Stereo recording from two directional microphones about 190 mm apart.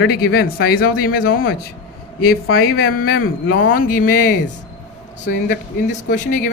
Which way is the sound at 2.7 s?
55° left (ahead or behind).